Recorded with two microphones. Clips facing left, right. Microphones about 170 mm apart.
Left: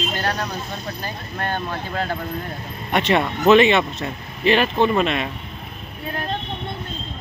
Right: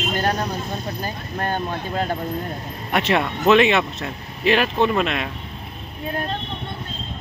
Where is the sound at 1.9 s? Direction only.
20° right (ahead or behind).